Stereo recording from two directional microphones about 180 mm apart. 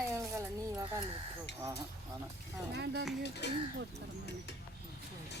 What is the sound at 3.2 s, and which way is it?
Speech, 70° left (ahead or behind).